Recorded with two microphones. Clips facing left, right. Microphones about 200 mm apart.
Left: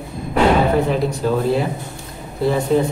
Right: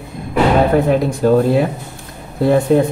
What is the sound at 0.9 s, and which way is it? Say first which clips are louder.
Speech: right 6 dB; 50° right (ahead or behind).